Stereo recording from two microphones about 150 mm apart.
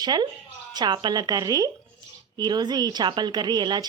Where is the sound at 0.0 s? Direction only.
30° right (ahead or behind).